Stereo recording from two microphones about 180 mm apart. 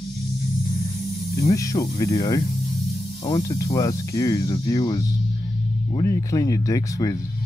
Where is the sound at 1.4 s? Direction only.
20° left (ahead or behind).